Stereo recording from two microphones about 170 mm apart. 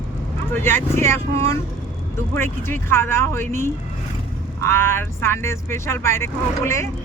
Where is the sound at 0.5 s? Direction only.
15° left (ahead or behind).